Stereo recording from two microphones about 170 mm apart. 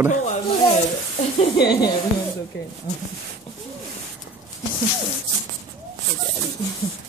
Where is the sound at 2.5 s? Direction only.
70° left (ahead or behind).